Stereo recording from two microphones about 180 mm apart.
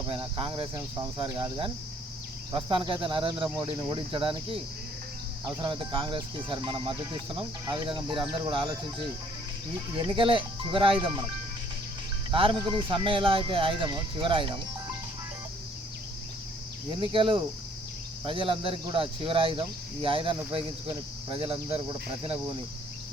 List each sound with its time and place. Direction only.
0.1 s speech: 30° right (ahead or behind)
9.9 s speech: 30° right (ahead or behind)
12.3 s speech: 30° right (ahead or behind)
16.9 s speech: 25° right (ahead or behind)